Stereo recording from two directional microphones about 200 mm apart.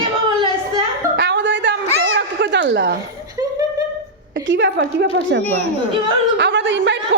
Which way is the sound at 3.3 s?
15° right (ahead or behind).